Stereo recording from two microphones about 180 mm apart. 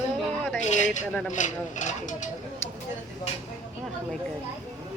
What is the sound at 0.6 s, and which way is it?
Speech, 40° left (ahead or behind).